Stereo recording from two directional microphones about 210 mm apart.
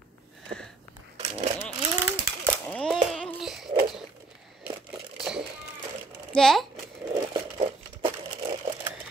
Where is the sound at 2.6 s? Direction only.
5° left (ahead or behind).